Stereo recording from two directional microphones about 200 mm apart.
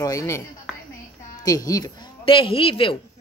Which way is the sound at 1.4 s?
15° left (ahead or behind).